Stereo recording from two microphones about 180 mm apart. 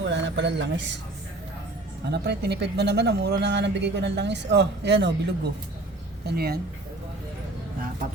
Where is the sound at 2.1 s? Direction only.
65° right (ahead or behind).